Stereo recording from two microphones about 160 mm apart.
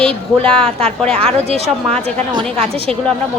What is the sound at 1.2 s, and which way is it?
Speech, 40° right (ahead or behind).